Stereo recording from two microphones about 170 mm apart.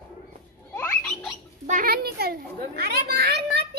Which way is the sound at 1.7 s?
60° right (ahead or behind).